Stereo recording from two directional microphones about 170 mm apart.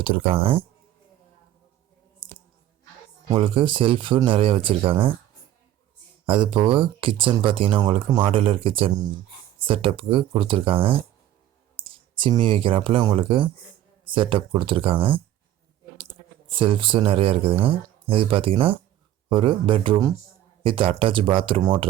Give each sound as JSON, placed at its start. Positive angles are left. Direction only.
{"t": 0.0, "sound": "speech", "side_deg": -30}
{"t": 2.2, "sound": "a sound", "side_deg": -30}
{"t": 3.2, "sound": "speech", "side_deg": -30}
{"t": 6.2, "sound": "speech", "side_deg": -30}